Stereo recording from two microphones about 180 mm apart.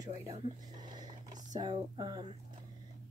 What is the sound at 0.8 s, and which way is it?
Speech, 20° right (ahead or behind).